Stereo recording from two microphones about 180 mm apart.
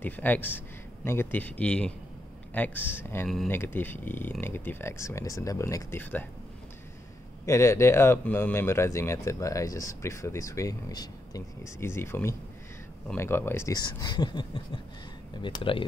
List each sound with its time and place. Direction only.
0.0 s speech: 10° left (ahead or behind)
3.3 s speech: centre (ahead or behind)
7.4 s speech: 15° left (ahead or behind)